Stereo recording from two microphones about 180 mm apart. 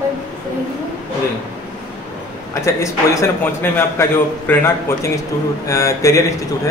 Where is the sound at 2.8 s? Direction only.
15° left (ahead or behind).